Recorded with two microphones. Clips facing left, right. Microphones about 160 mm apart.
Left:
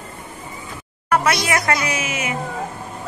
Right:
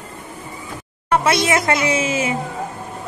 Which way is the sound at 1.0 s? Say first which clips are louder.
Right 2 dB; 25° right (ahead or behind).